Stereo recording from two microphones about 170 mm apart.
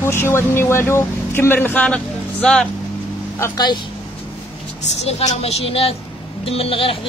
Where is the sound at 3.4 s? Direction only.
25° left (ahead or behind).